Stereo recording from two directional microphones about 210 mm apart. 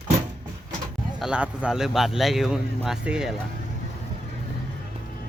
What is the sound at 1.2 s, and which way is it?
A man's voice, 5° right (ahead or behind).